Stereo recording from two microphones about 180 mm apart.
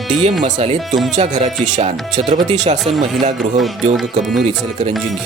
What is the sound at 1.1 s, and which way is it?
Speech, 40° right (ahead or behind).